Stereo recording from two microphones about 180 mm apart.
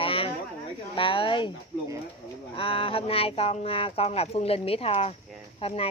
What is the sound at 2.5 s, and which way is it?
Speech, 30° left (ahead or behind).